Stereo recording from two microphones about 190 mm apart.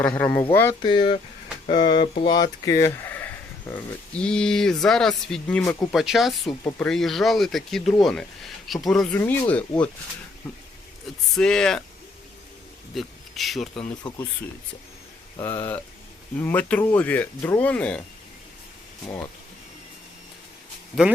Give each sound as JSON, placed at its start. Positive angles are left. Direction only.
{"t": 0.0, "sound": "speech", "side_deg": 10}
{"t": 0.8, "sound": "speech", "side_deg": 25}
{"t": 11.3, "sound": "speech", "side_deg": 5}
{"t": 12.9, "sound": "speech", "side_deg": 0}
{"t": 15.4, "sound": "speech", "side_deg": 10}